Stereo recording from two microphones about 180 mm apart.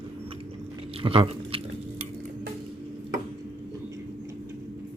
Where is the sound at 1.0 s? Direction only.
30° right (ahead or behind).